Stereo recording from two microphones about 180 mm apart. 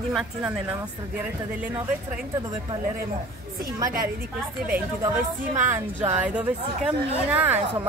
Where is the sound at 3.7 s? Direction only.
20° right (ahead or behind).